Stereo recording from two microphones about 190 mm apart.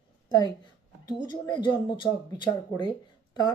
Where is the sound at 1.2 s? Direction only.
25° left (ahead or behind).